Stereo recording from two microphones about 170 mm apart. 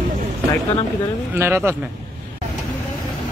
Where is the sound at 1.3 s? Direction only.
15° right (ahead or behind).